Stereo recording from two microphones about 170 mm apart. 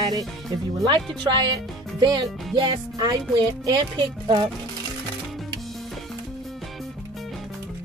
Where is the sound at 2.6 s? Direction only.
25° right (ahead or behind).